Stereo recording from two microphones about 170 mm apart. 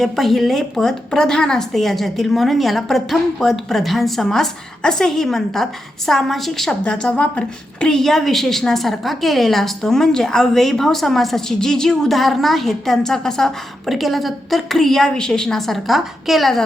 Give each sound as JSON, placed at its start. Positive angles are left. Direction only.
{"t": 0.0, "sound": "a woman's voice", "side_deg": 0}